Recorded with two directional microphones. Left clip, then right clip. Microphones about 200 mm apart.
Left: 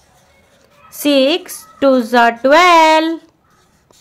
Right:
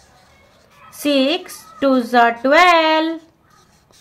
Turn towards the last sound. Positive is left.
turn(degrees=35)  # may be behind; listen again after turning